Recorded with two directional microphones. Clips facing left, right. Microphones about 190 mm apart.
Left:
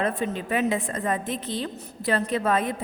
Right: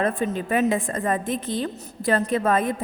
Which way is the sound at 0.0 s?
45° right (ahead or behind).